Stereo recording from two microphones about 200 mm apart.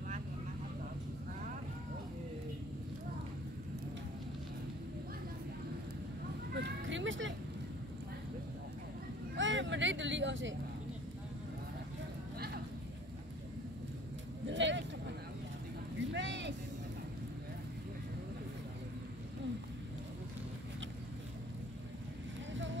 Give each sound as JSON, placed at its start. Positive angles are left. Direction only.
{"t": 6.5, "sound": "vehicle", "side_deg": -65}
{"t": 9.4, "sound": "vehicle", "side_deg": -65}
{"t": 14.5, "sound": "vehicle", "side_deg": -65}